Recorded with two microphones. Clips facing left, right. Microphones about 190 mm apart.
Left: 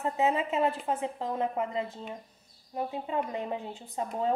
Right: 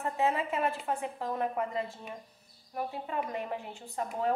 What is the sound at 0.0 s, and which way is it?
A woman's voice, 20° left (ahead or behind).